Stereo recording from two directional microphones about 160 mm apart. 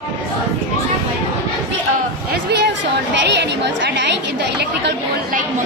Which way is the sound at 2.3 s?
90° right.